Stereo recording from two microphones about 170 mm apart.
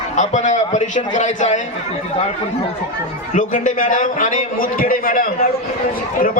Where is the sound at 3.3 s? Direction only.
50° left (ahead or behind).